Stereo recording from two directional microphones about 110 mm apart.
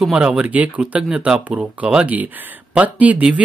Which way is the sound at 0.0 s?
10° right (ahead or behind).